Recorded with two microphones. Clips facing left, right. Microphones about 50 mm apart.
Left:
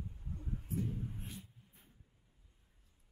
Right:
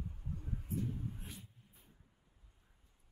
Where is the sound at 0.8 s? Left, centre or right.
Left.